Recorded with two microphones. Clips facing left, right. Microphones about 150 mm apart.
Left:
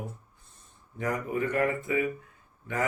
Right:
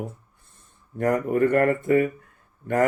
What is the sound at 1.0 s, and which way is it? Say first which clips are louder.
Speech: right 9 dB; 55° right (ahead or behind).